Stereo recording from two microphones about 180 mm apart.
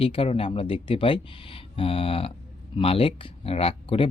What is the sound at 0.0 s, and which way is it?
Speech, 30° left (ahead or behind).